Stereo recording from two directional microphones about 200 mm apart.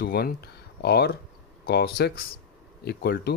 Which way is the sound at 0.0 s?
50° left (ahead or behind).